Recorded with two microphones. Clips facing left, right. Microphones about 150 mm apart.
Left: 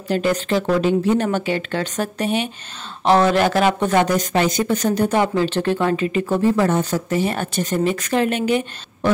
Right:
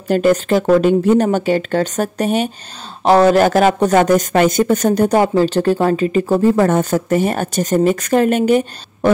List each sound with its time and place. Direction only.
0.1 s speech: 45° right (ahead or behind)